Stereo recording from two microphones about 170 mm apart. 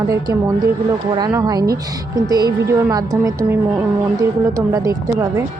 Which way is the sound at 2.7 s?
20° right (ahead or behind).